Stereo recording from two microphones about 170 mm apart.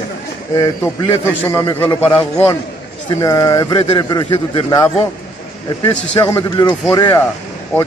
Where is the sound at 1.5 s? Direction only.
15° left (ahead or behind).